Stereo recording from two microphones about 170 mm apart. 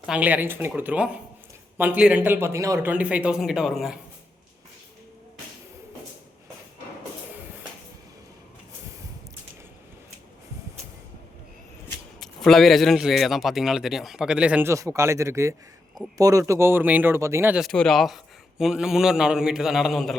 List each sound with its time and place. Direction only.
0.0 s speech: 5° right (ahead or behind)
12.2 s a man's voice: centre (ahead or behind); by 17.6 s 15° right (ahead or behind)
17.6 s a man's voice: 5° left (ahead or behind)